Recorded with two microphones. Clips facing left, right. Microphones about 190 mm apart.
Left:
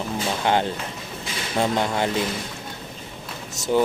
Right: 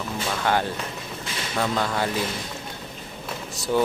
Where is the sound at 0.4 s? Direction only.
20° left (ahead or behind).